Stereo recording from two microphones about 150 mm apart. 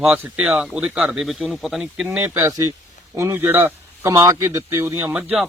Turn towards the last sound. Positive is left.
turn(degrees=0)  # may be behind; listen again after turning